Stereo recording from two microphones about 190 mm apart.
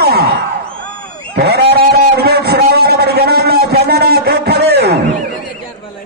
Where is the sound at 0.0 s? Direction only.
55° right (ahead or behind).